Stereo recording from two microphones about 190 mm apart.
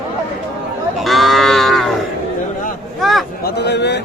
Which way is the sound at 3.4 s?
60° left (ahead or behind).